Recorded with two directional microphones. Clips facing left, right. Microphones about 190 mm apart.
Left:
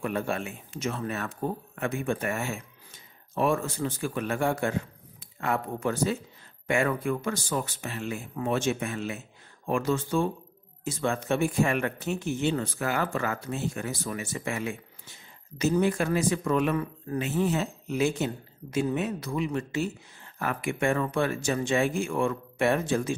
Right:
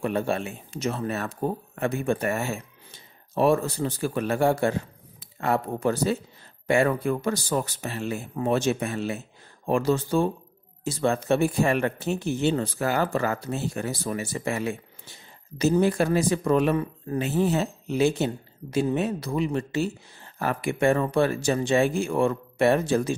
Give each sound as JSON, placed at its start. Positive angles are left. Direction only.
{"t": 0.0, "sound": "speech", "side_deg": -30}